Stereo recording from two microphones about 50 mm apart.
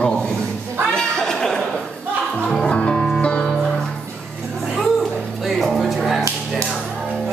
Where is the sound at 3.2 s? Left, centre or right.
Left.